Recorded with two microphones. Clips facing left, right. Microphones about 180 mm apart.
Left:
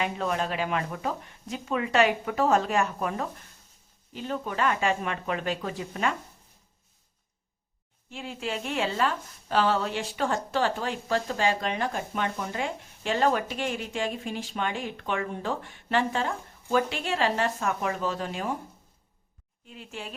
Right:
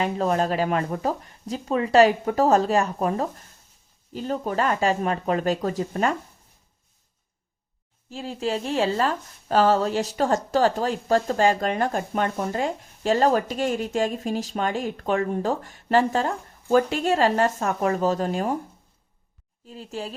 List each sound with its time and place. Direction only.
0.0 s speech: 35° right (ahead or behind)
8.1 s speech: 35° right (ahead or behind)
19.6 s speech: 35° right (ahead or behind)